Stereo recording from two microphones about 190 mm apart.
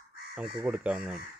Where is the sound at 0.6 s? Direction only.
5° right (ahead or behind).